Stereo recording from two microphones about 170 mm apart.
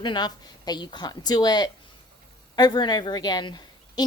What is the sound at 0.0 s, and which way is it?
A woman's voice, 25° left (ahead or behind).